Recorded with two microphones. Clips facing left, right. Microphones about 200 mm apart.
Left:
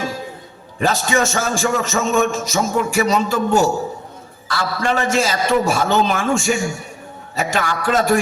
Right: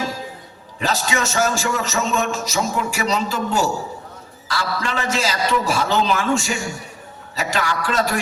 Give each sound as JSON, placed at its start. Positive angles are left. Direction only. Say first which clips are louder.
{"t": 0.8, "sound": "a man's voice", "louder": "left 4 dB", "side_deg": 50}